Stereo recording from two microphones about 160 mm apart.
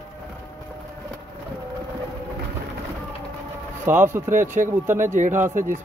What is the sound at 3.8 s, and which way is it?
Speech, 15° right (ahead or behind).